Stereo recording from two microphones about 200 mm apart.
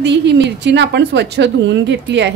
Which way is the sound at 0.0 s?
60° right (ahead or behind).